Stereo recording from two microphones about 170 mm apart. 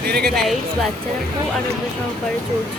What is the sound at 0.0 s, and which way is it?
Speech, 70° right (ahead or behind).